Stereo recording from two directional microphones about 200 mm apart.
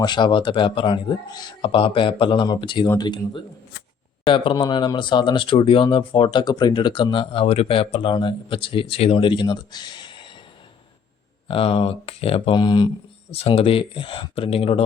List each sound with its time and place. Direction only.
0.0 s speech: 20° left (ahead or behind)
11.4 s speech: 25° left (ahead or behind)